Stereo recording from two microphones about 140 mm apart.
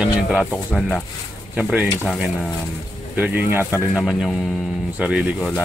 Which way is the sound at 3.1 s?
10° right (ahead or behind).